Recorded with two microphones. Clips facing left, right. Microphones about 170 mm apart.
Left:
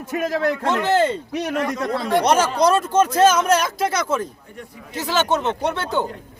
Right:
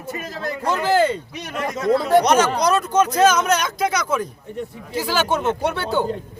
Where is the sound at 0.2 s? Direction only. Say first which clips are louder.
Left 10 dB; 70° left (ahead or behind).